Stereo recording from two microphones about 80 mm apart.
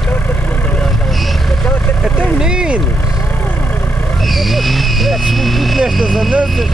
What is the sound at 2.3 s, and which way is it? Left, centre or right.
Vehicle, centre.